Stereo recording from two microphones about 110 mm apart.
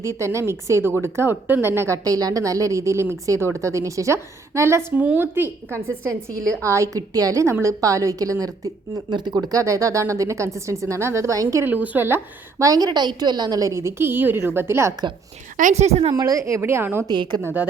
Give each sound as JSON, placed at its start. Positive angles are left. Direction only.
{"t": 0.0, "sound": "a woman's voice", "side_deg": -25}
{"t": 11.6, "sound": "a woman's voice", "side_deg": -15}
{"t": 15.7, "sound": "speech", "side_deg": -80}
{"t": 16.1, "sound": "a woman's voice", "side_deg": -35}
{"t": 17.1, "sound": "speech", "side_deg": -40}
{"t": 17.4, "sound": "a woman's voice", "side_deg": -15}